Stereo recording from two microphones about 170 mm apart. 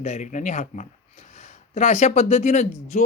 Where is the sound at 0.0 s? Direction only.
45° left (ahead or behind).